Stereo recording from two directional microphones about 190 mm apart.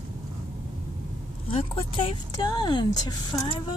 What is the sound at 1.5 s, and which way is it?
Speech, 30° left (ahead or behind).